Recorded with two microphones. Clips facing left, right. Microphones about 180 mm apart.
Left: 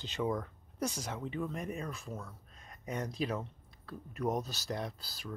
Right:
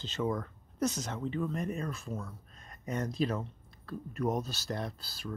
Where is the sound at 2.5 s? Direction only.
10° left (ahead or behind).